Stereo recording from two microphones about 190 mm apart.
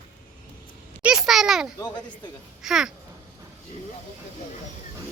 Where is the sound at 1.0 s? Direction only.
5° right (ahead or behind).